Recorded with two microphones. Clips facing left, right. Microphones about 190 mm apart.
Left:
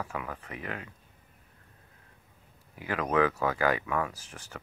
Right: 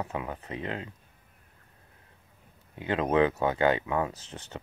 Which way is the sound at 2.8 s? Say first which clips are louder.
Right 3 dB; 25° right (ahead or behind).